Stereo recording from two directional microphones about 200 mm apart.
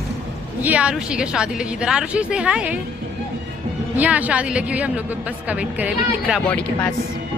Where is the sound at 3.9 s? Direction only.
5° right (ahead or behind).